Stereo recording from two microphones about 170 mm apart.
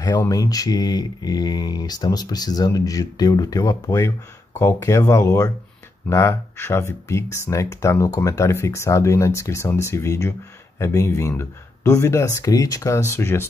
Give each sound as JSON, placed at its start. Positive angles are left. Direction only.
{"t": 0.3, "sound": "speech", "side_deg": 20}